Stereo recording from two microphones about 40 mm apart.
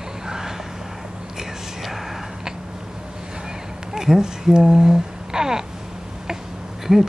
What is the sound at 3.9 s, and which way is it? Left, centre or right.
Speech, centre.